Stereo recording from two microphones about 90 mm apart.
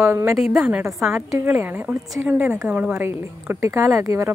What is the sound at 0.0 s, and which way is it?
A woman's voice, 30° right (ahead or behind).